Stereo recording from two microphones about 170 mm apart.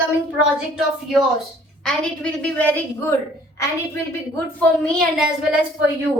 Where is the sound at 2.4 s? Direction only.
10° left (ahead or behind).